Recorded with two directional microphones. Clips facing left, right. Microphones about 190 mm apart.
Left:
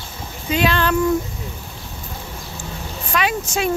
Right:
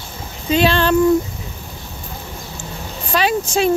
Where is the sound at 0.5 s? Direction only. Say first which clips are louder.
Right 4 dB; 30° right (ahead or behind).